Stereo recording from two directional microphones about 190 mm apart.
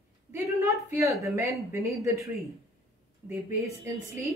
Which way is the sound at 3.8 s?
15° right (ahead or behind).